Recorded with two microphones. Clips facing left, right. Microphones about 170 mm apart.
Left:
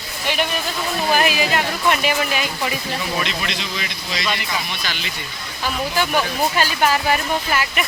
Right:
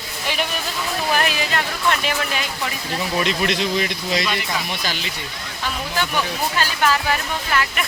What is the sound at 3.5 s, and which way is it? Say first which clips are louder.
Speech: right 7 dB; 50° right (ahead or behind).